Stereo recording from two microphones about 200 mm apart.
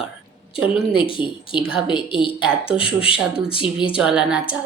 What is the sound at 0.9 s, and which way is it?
A woman's voice, 25° left (ahead or behind).